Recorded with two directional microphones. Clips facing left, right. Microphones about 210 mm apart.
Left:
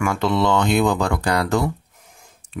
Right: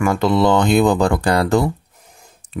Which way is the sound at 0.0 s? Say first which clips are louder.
Right 4 dB; 35° right (ahead or behind).